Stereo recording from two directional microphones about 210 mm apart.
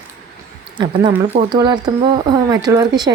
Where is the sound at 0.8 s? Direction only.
20° right (ahead or behind).